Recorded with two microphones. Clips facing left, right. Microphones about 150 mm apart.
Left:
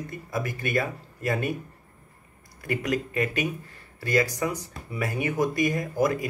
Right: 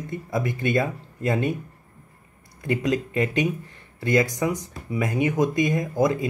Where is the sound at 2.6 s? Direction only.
20° right (ahead or behind).